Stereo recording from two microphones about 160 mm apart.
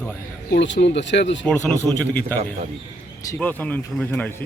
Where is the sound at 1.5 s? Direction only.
10° left (ahead or behind).